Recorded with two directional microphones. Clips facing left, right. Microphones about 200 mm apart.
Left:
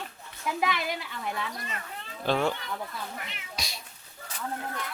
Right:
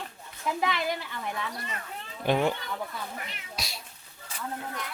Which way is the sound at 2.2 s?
15° right (ahead or behind).